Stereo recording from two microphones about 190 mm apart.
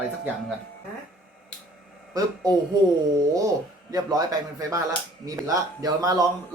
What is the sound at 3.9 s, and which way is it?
A man's voice, 20° right (ahead or behind).